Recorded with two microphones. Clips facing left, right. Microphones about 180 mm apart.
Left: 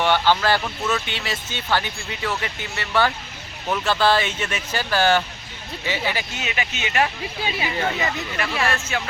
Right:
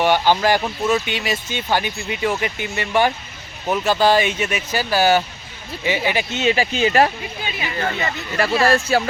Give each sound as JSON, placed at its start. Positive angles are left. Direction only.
{"t": 0.0, "sound": "speech", "side_deg": -15}
{"t": 6.4, "sound": "speech", "side_deg": -30}
{"t": 7.6, "sound": "speech", "side_deg": 10}
{"t": 8.4, "sound": "speech", "side_deg": -35}